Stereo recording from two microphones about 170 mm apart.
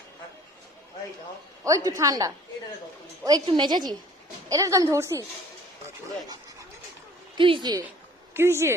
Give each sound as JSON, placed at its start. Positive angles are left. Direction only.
{"t": 1.6, "sound": "a woman's voice", "side_deg": -20}
{"t": 7.3, "sound": "a woman's voice", "side_deg": -30}
{"t": 8.3, "sound": "speech", "side_deg": -15}